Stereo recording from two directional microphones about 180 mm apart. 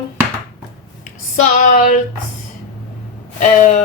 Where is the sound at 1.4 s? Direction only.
45° left (ahead or behind).